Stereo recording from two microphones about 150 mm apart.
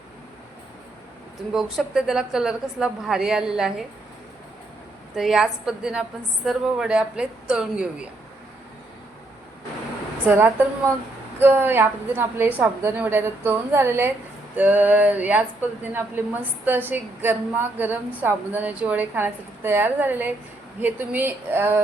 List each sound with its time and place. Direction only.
1.5 s a woman's voice: centre (ahead or behind)
5.1 s a woman's voice: 5° right (ahead or behind)
10.2 s speech: 15° right (ahead or behind)